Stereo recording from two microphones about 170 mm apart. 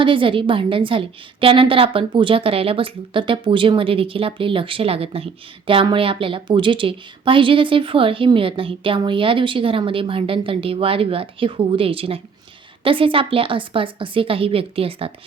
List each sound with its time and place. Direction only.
0.0 s a woman's voice: 30° right (ahead or behind)